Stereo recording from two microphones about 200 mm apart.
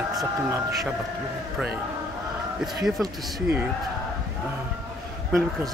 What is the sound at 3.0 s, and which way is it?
Speech, 10° right (ahead or behind).